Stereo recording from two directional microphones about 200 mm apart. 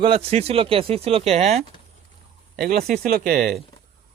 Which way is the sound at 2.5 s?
45° right (ahead or behind).